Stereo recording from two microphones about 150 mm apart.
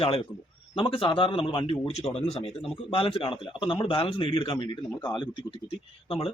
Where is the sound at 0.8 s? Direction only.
35° left (ahead or behind).